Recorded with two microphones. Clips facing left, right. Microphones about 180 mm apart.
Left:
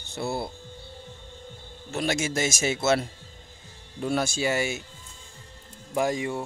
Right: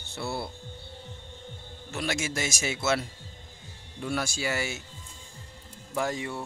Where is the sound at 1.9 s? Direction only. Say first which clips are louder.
Left 4 dB; 25° left (ahead or behind).